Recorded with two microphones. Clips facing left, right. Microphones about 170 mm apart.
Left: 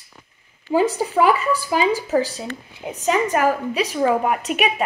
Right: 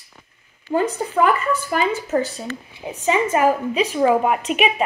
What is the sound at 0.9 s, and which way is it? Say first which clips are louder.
Speech: left 1 dB; 10° left (ahead or behind).